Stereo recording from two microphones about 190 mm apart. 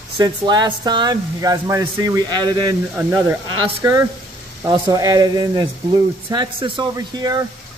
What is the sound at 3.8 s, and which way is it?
Speech, 20° right (ahead or behind).